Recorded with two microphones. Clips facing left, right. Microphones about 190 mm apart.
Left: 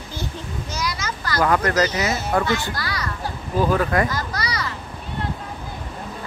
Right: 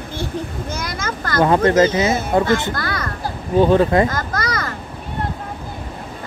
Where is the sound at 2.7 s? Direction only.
50° right (ahead or behind).